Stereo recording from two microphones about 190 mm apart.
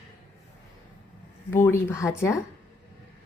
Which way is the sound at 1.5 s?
10° left (ahead or behind).